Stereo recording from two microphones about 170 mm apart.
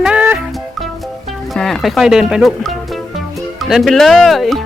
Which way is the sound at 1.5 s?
Centre (ahead or behind).